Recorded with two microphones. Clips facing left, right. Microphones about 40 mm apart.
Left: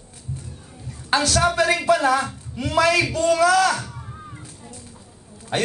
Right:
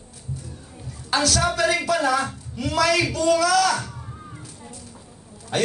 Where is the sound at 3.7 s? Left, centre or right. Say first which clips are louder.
Right 1 dB; centre.